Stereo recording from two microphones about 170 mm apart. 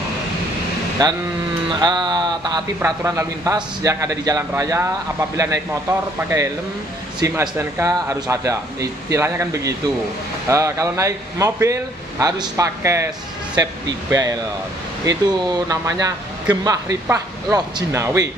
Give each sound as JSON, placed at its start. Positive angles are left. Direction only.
{"t": 1.0, "sound": "speech", "side_deg": -20}